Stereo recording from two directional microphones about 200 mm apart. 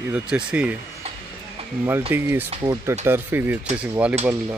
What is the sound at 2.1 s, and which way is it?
Speech, 10° right (ahead or behind).